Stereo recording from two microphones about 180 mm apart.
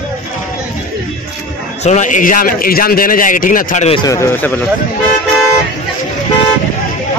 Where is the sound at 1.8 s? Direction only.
40° left (ahead or behind).